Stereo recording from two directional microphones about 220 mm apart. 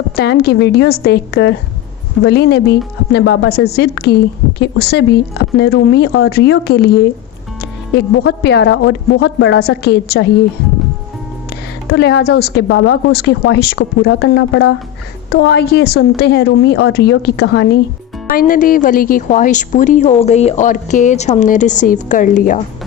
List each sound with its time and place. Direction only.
0.2 s a woman's voice: 45° left (ahead or behind)
11.9 s a woman's voice: 50° left (ahead or behind)
18.3 s a woman's voice: 40° left (ahead or behind)